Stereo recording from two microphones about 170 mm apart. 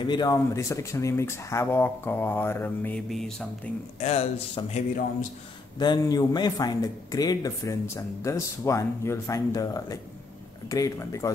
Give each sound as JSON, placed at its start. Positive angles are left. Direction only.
{"t": 0.0, "sound": "speech", "side_deg": 25}
{"t": 4.0, "sound": "a man's voice", "side_deg": 40}
{"t": 5.8, "sound": "speech", "side_deg": 25}